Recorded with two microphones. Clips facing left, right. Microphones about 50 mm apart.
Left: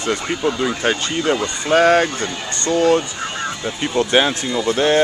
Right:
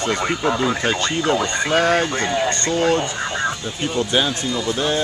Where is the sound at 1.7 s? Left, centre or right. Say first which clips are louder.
Left 5 dB; left.